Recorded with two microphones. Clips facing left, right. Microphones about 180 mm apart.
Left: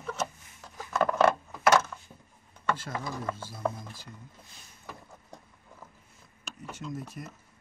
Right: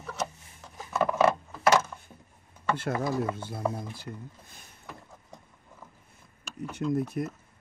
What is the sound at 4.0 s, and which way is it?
Speech, 55° right (ahead or behind).